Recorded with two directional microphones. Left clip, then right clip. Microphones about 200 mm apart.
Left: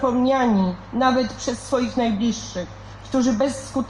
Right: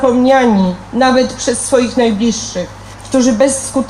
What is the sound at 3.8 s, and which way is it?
Speech, 45° right (ahead or behind).